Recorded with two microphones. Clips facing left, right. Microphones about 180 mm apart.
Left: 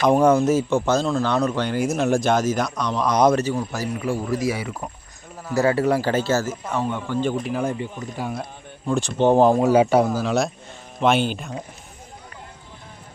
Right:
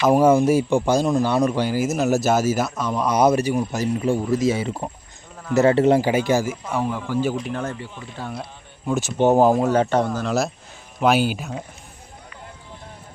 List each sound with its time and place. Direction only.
0.0 s speech: 5° right (ahead or behind); by 6.1 s 25° right (ahead or behind)
6.1 s speech: 15° right (ahead or behind)
7.4 s speech: 10° left (ahead or behind)
8.9 s speech: 5° right (ahead or behind)
9.6 s speech: 10° left (ahead or behind)